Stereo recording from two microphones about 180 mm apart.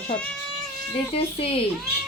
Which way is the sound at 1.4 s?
30° left (ahead or behind).